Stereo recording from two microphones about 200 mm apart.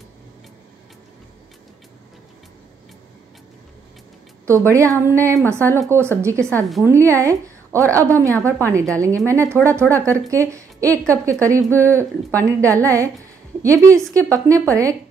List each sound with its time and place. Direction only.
4.5 s a woman's voice: 15° right (ahead or behind)